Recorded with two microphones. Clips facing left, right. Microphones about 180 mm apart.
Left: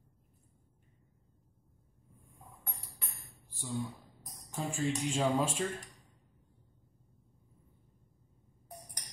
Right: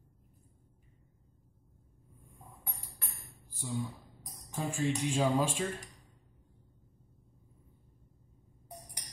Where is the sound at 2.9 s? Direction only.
Centre (ahead or behind).